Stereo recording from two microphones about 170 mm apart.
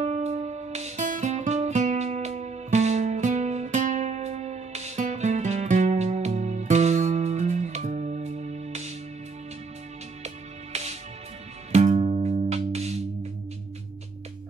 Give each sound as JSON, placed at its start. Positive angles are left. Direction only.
{"t": 0.0, "sound": "music", "side_deg": -45}
{"t": 10.2, "sound": "music", "side_deg": -40}